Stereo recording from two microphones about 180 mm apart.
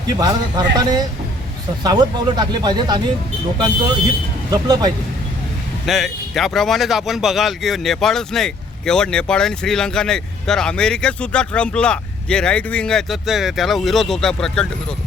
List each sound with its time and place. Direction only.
0.2 s speech: 25° right (ahead or behind)
4.5 s speech: 25° right (ahead or behind)
5.8 s speech: centre (ahead or behind)